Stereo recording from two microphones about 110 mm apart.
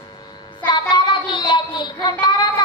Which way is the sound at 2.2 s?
40° left (ahead or behind).